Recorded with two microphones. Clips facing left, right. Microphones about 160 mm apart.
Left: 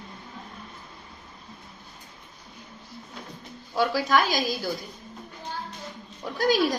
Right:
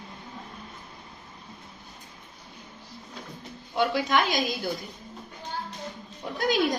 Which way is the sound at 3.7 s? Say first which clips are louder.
Left 1 dB; 20° right (ahead or behind).